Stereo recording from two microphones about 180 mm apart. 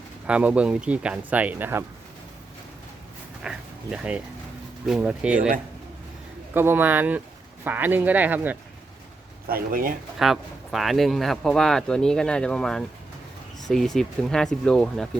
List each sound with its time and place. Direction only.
0.3 s speech: 5° right (ahead or behind)
3.4 s speech: 5° right (ahead or behind)
6.5 s speech: 10° right (ahead or behind)
9.5 s speech: 55° right (ahead or behind)
10.2 s speech: centre (ahead or behind)